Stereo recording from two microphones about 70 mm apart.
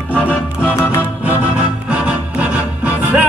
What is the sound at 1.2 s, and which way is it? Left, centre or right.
Music, right.